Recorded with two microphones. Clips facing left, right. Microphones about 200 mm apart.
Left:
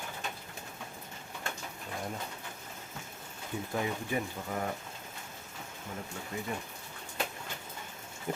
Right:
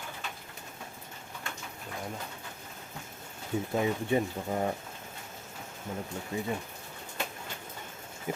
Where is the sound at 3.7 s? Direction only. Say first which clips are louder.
Right 5 dB; 25° right (ahead or behind).